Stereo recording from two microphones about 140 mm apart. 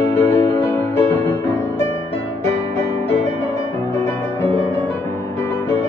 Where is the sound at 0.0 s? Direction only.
20° left (ahead or behind).